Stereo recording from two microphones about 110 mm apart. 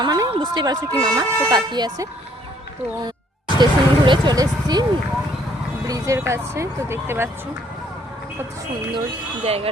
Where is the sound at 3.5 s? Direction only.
45° right (ahead or behind).